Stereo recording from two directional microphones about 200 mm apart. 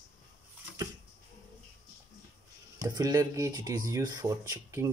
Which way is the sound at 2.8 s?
20° right (ahead or behind).